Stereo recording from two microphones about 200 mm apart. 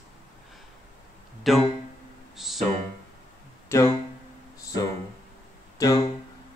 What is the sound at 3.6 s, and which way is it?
Speech, 15° left (ahead or behind).